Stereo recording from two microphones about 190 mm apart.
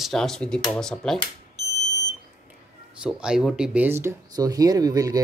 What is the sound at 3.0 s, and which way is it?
Speech, 5° right (ahead or behind).